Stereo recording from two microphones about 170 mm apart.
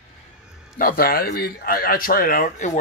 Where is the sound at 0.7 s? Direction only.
55° left (ahead or behind).